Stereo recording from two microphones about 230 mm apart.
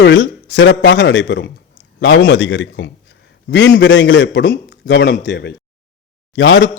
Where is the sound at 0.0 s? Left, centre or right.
Left.